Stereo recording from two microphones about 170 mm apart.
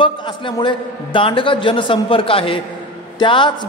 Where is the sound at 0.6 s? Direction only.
30° left (ahead or behind).